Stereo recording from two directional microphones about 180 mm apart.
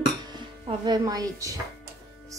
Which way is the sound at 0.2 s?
25° right (ahead or behind).